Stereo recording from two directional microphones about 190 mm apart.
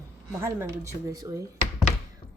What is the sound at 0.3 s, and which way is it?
A woman's voice, 15° right (ahead or behind).